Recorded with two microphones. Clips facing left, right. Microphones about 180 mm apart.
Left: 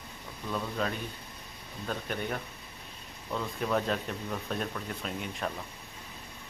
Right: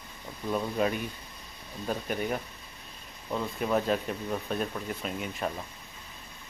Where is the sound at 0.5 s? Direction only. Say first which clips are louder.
Right 5 dB; 15° right (ahead or behind).